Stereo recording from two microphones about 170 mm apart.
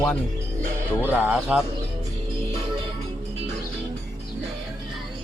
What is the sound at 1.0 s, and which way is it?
Speech, 10° right (ahead or behind).